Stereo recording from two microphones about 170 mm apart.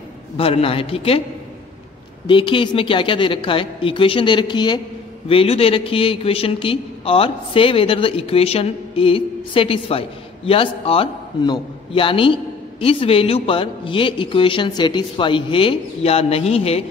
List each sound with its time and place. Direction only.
0.4 s a man's voice: 35° left (ahead or behind)
2.2 s a woman's voice: 30° left (ahead or behind)